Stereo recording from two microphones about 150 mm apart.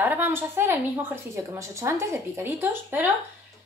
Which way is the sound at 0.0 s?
15° right (ahead or behind).